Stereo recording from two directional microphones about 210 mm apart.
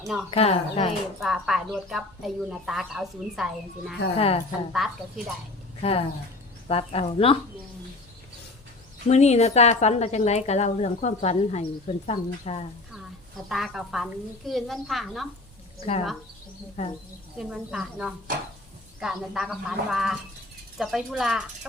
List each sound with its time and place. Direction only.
0.3 s speech: 30° left (ahead or behind)
1.2 s a woman's voice: centre (ahead or behind)
5.8 s speech: 25° left (ahead or behind)
9.0 s a woman's voice: 30° left (ahead or behind)
12.9 s a woman's voice: centre (ahead or behind)
15.8 s a woman's voice: 30° left (ahead or behind)
17.3 s a woman's voice: 5° right (ahead or behind)